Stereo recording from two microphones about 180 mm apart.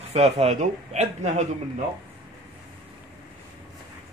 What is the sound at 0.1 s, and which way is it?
Speech, 35° right (ahead or behind).